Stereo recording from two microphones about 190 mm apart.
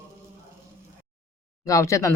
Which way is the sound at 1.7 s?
15° left (ahead or behind).